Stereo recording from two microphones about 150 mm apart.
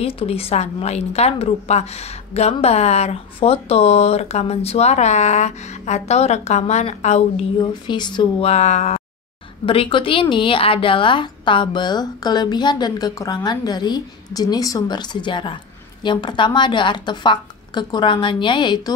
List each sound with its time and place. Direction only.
0.0 s a woman's voice: 40° left (ahead or behind)
7.6 s speech: 30° left (ahead or behind)
8.5 s a woman's voice: 45° left (ahead or behind)
9.7 s a woman's voice: 35° left (ahead or behind)